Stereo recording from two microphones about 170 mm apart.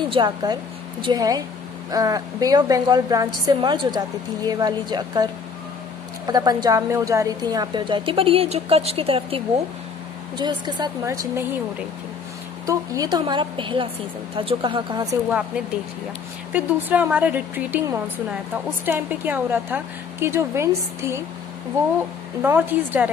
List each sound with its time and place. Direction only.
0.1 s a woman's voice: 25° right (ahead or behind)
12.6 s a woman's voice: 20° right (ahead or behind)
16.5 s a woman's voice: 10° right (ahead or behind)
22.4 s a woman's voice: 10° right (ahead or behind)